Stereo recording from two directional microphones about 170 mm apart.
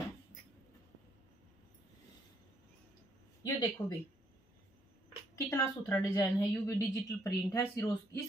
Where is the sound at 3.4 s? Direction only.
25° left (ahead or behind).